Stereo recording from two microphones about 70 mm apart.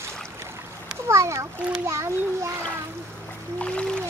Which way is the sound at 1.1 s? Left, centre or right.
Right.